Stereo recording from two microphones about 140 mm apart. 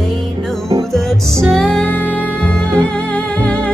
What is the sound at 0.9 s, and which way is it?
Music, 5° left (ahead or behind).